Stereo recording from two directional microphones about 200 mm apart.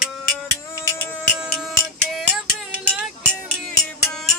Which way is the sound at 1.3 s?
5° right (ahead or behind).